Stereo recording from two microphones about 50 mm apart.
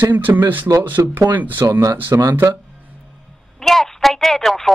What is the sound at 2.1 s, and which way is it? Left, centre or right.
Speech, right.